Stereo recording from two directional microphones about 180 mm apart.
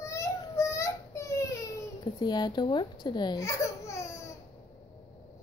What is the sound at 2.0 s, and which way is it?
Speech, 25° left (ahead or behind).